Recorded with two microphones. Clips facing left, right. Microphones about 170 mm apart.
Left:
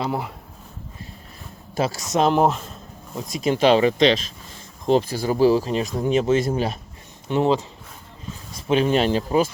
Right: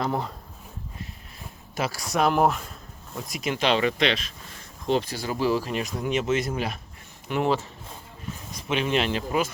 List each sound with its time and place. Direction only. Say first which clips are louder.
0.0 s speech: left 1 dB; 10° left (ahead or behind)
1.7 s speech: left 5 dB; 25° left (ahead or behind)
8.6 s speech: left 6 dB; 35° left (ahead or behind)